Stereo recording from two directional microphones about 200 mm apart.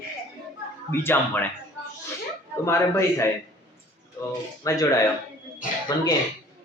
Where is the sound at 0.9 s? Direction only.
10° left (ahead or behind).